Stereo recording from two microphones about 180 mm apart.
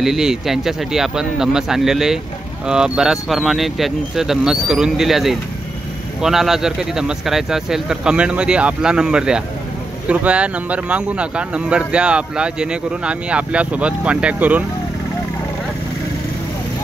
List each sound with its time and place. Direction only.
0.0 s speech: centre (ahead or behind)